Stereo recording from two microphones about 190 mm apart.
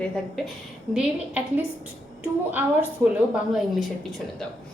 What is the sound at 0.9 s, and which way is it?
Speech, 5° right (ahead or behind).